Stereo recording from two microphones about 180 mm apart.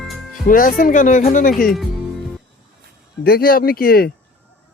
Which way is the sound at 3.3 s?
55° left (ahead or behind).